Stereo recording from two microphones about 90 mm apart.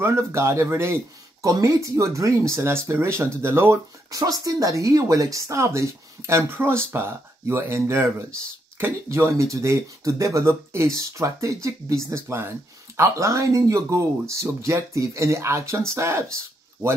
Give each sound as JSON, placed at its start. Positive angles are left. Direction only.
{"t": 0.0, "sound": "speech", "side_deg": -30}
{"t": 4.1, "sound": "speech", "side_deg": -40}